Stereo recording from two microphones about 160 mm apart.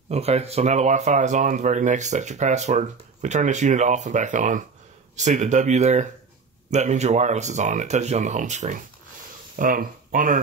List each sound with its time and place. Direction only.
0.1 s speech: 40° right (ahead or behind)
9.6 s speech: 60° right (ahead or behind)